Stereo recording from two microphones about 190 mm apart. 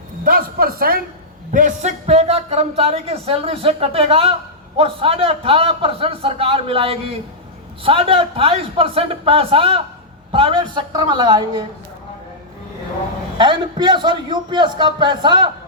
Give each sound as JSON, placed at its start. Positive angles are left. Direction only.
{"t": 0.3, "sound": "a man's voice", "side_deg": -50}
{"t": 13.4, "sound": "a man's voice", "side_deg": -25}